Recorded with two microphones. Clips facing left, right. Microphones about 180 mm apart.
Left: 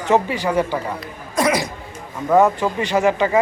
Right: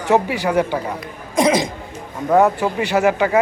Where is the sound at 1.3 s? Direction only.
20° right (ahead or behind).